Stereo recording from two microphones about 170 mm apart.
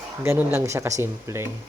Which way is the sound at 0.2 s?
15° right (ahead or behind).